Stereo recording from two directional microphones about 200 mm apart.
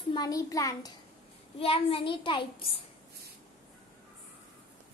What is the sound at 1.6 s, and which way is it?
Speech, 30° left (ahead or behind).